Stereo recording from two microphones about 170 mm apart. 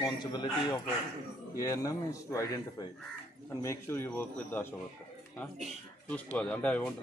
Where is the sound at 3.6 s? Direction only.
15° left (ahead or behind).